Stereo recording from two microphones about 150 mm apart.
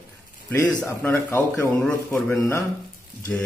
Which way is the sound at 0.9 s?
15° left (ahead or behind).